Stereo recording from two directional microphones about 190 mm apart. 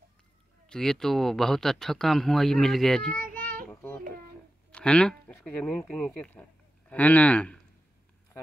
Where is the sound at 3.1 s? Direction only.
45° right (ahead or behind).